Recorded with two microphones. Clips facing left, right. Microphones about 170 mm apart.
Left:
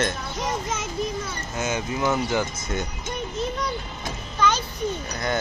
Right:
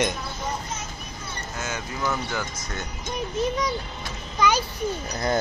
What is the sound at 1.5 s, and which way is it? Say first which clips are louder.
Speech: left 6 dB; 20° left (ahead or behind).